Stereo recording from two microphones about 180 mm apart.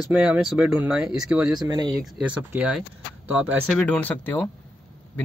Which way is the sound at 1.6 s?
20° right (ahead or behind).